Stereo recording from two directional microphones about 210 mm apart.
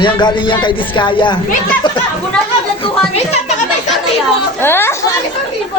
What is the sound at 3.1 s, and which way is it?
Music, 30° left (ahead or behind).